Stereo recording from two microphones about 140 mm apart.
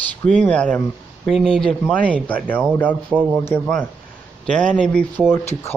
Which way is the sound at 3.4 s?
15° left (ahead or behind).